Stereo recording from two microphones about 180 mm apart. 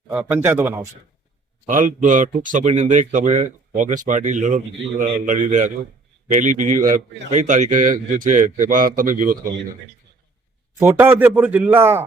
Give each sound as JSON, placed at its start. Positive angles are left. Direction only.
{"t": 0.1, "sound": "a man's voice", "side_deg": -10}
{"t": 1.6, "sound": "a man's voice", "side_deg": -45}
{"t": 10.8, "sound": "a man's voice", "side_deg": -15}